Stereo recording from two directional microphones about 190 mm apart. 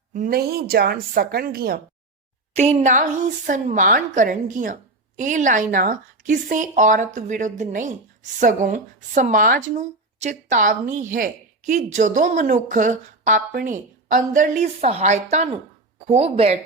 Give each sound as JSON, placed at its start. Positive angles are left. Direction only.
{"t": 0.1, "sound": "speech", "side_deg": -50}
{"t": 2.6, "sound": "a woman's voice", "side_deg": -35}